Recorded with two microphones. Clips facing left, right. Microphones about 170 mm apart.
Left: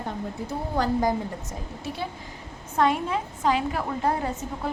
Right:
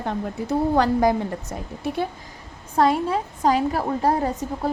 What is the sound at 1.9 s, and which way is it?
Speech, 60° right (ahead or behind).